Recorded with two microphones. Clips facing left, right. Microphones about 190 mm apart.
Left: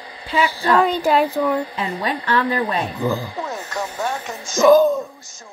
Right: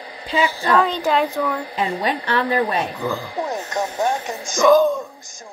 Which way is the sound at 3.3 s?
15° right (ahead or behind).